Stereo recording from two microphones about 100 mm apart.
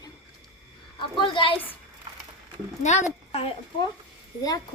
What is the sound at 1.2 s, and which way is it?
Speech, 55° left (ahead or behind).